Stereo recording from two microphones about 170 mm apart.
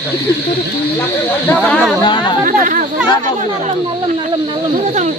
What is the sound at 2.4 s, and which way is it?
Speech, 50° right (ahead or behind).